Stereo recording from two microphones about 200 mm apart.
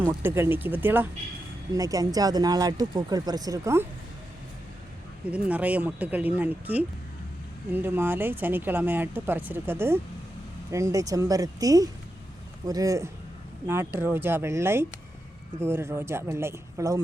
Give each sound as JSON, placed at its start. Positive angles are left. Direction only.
{"t": 0.0, "sound": "speech", "side_deg": -10}
{"t": 5.3, "sound": "speech", "side_deg": -5}